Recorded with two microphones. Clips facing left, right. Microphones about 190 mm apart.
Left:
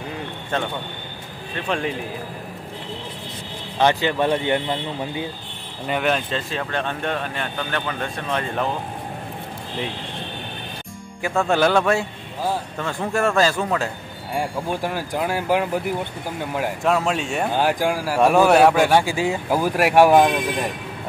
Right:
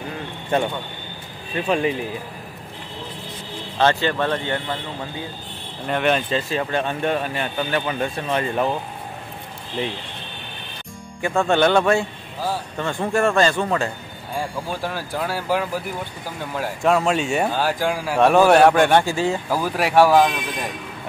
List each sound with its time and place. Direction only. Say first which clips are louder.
1.5 s speech: right 4 dB; 5° right (ahead or behind)
3.7 s a man's voice: even; 15° left (ahead or behind)
5.9 s speech: right 2 dB; centre (ahead or behind)
11.2 s speech: right 1 dB; 5° left (ahead or behind)
14.3 s a man's voice: left 2 dB; 15° left (ahead or behind)
16.8 s speech: right 4 dB; centre (ahead or behind)
17.5 s a man's voice: left 2 dB; 15° left (ahead or behind)
17.9 s a man's voice: right 3 dB; 5° left (ahead or behind)